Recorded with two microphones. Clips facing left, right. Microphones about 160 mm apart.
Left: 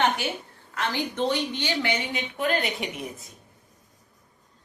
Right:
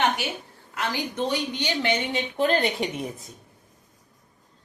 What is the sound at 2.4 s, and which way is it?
Speech, 35° right (ahead or behind).